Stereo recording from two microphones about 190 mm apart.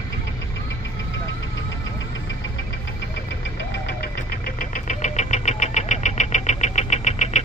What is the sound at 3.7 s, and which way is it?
Engine knocking, 60° left (ahead or behind).